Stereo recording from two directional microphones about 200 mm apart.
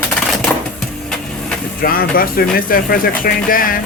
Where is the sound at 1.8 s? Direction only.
45° left (ahead or behind).